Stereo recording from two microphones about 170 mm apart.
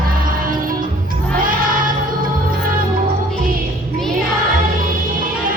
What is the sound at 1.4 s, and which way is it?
Choir, 55° right (ahead or behind).